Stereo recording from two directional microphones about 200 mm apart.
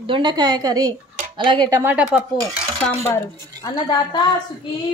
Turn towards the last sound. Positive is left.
turn(degrees=20)  # may be behind; listen again after turning